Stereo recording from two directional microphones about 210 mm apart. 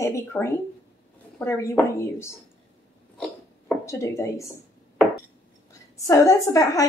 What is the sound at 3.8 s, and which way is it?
Speech, 15° left (ahead or behind).